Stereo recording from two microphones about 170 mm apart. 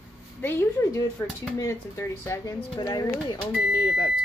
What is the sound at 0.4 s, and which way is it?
Speech, 15° left (ahead or behind).